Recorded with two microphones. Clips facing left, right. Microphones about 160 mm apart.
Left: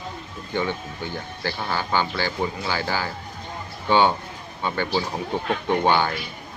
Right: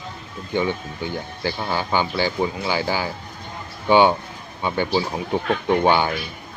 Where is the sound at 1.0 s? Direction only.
15° right (ahead or behind).